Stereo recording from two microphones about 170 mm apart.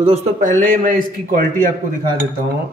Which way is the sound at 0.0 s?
45° right (ahead or behind).